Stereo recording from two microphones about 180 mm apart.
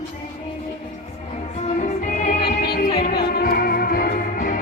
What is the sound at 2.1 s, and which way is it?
Music, 45° left (ahead or behind).